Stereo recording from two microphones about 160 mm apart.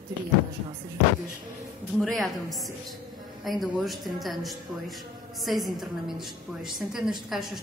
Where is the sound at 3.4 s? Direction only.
Centre (ahead or behind).